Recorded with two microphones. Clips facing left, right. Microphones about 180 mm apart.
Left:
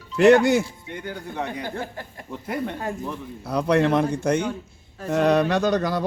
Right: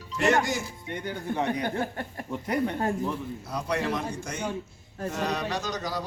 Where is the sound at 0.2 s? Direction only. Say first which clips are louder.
Left 10 dB; 60° left (ahead or behind).